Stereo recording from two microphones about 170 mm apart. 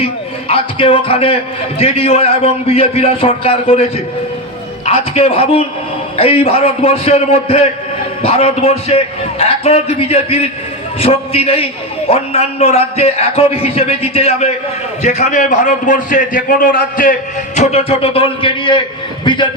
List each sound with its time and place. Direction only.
0.0 s a man's voice: 35° left (ahead or behind)
4.9 s a man's voice: 35° left (ahead or behind)